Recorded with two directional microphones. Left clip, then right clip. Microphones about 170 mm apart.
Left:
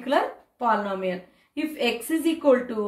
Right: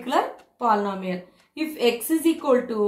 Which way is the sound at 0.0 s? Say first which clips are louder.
Even; 35° right (ahead or behind).